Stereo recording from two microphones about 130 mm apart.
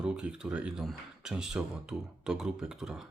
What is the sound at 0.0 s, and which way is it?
Speech, 5° right (ahead or behind).